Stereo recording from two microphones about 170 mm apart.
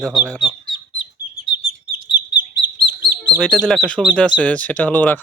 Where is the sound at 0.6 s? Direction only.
30° left (ahead or behind).